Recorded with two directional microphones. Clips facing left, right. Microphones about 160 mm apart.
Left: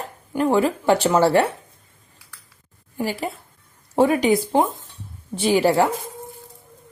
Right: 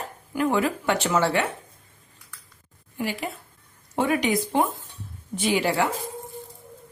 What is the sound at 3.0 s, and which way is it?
A woman's voice, 35° left (ahead or behind).